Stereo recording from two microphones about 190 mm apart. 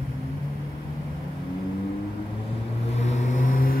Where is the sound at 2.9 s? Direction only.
35° left (ahead or behind).